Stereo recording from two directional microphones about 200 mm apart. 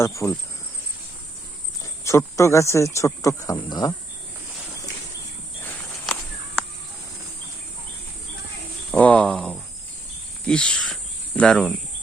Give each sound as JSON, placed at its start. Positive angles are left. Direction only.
{"t": 0.0, "sound": "speech", "side_deg": 15}
{"t": 1.8, "sound": "speech", "side_deg": 15}
{"t": 8.9, "sound": "a sound", "side_deg": 5}
{"t": 10.4, "sound": "speech", "side_deg": 5}